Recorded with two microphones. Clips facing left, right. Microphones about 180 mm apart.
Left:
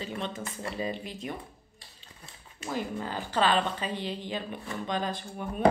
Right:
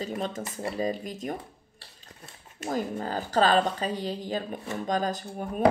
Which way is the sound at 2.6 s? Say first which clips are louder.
Right 3 dB; 40° right (ahead or behind).